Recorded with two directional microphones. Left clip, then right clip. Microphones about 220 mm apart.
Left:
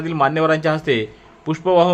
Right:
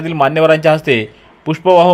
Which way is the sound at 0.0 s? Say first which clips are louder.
Right 5 dB; 10° right (ahead or behind).